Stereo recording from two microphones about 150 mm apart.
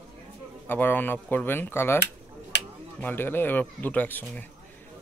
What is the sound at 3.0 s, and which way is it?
Speech, 15° left (ahead or behind).